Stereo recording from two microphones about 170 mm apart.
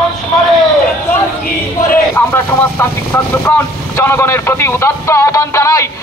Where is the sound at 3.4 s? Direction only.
10° left (ahead or behind).